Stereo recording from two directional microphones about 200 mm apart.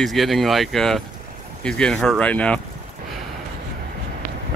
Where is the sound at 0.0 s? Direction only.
Centre (ahead or behind).